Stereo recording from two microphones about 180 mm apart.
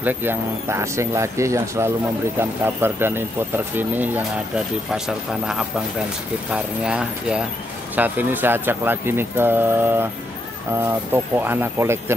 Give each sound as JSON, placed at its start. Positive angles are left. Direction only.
{"t": 0.0, "sound": "speech", "side_deg": -10}
{"t": 11.3, "sound": "speech", "side_deg": -10}